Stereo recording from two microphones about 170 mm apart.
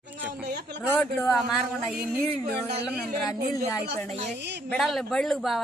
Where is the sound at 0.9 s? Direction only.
15° left (ahead or behind).